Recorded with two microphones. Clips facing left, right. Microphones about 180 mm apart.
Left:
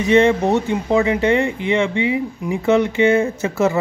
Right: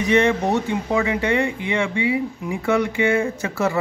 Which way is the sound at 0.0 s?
25° left (ahead or behind).